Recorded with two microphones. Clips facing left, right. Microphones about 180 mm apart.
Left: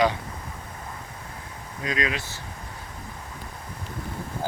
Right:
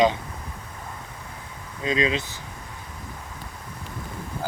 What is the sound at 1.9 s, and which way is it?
Speech, 25° right (ahead or behind).